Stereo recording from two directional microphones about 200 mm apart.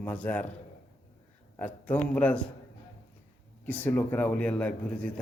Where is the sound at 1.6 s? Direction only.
10° left (ahead or behind).